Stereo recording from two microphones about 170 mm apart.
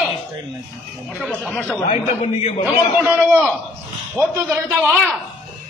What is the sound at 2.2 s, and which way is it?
Speech, 40° left (ahead or behind).